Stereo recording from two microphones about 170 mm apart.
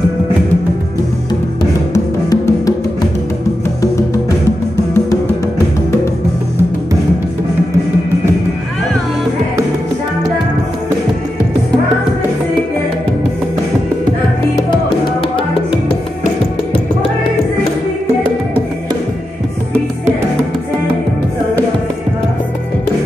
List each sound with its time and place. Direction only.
2.2 s music: 20° left (ahead or behind)
4.5 s music: 15° left (ahead or behind)